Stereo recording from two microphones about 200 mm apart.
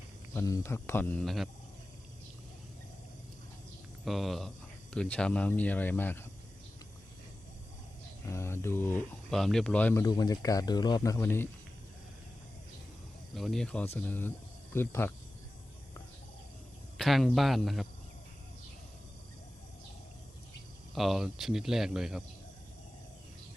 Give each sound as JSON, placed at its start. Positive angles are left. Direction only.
{"t": 0.3, "sound": "speech", "side_deg": 15}
{"t": 4.0, "sound": "speech", "side_deg": 0}
{"t": 8.3, "sound": "speech", "side_deg": 15}
{"t": 13.3, "sound": "speech", "side_deg": 0}
{"t": 17.0, "sound": "speech", "side_deg": 0}
{"t": 20.9, "sound": "speech", "side_deg": 0}